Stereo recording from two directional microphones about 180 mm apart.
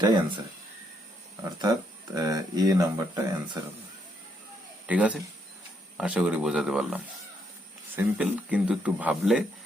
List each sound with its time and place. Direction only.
0.0 s speech: 25° right (ahead or behind)
2.1 s speech: 20° right (ahead or behind)
4.9 s speech: 5° right (ahead or behind)